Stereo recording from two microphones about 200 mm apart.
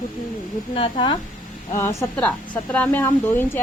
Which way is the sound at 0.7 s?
25° left (ahead or behind).